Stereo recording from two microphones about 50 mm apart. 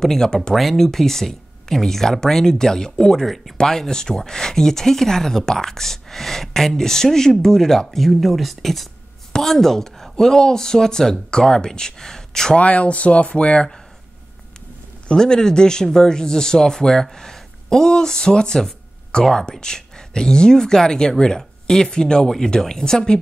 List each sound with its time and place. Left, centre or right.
0.0 s speech: centre
12.5 s speech: left
15.0 s speech: centre